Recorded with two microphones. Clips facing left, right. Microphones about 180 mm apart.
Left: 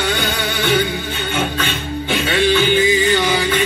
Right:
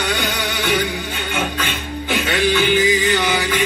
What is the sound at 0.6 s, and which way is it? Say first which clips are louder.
Music: left 3 dB; 30° left (ahead or behind).